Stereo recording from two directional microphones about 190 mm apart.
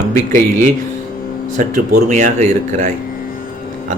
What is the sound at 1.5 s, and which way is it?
Speech, 45° right (ahead or behind).